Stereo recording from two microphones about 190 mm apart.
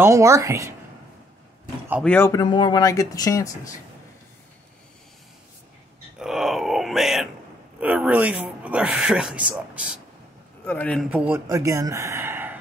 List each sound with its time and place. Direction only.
0.0 s a man's voice: 15° right (ahead or behind)
2.0 s a man's voice: 15° left (ahead or behind)
6.1 s a man's voice: 5° right (ahead or behind)
10.6 s a man's voice: 10° left (ahead or behind)
11.1 s a man's voice: 5° right (ahead or behind)